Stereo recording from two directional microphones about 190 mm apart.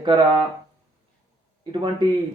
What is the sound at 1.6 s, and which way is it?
Speech, 25° right (ahead or behind).